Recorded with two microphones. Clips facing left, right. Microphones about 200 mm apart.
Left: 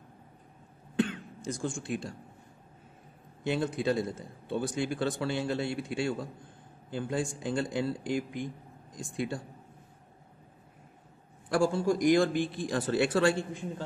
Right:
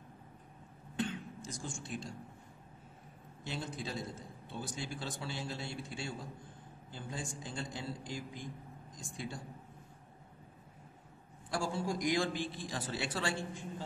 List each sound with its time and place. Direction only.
0.9 s cough: 55° left (ahead or behind)
3.4 s a man's voice: 60° left (ahead or behind)
11.4 s a man's voice: 60° left (ahead or behind)